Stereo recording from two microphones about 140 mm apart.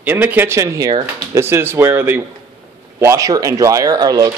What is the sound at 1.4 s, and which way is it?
Speech, 15° right (ahead or behind).